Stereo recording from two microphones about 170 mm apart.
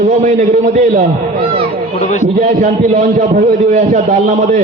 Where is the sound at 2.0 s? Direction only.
45° left (ahead or behind).